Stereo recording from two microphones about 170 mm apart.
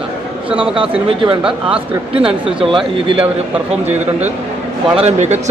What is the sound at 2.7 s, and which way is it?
Speech, 30° right (ahead or behind).